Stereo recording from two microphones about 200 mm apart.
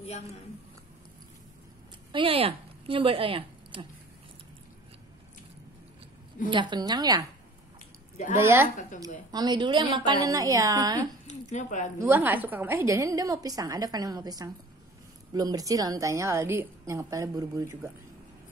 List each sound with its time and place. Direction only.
0.0 s a woman's voice: 30° left (ahead or behind)
2.1 s speech: 30° right (ahead or behind)
6.5 s a woman's voice: 25° right (ahead or behind)
8.4 s a woman's voice: 10° right (ahead or behind)
11.5 s speech: 40° left (ahead or behind)
12.0 s a woman's voice: 10° right (ahead or behind)